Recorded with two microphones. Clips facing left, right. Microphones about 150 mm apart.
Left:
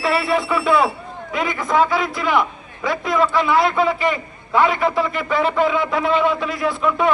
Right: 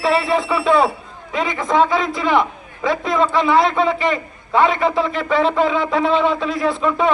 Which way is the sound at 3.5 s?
5° left (ahead or behind).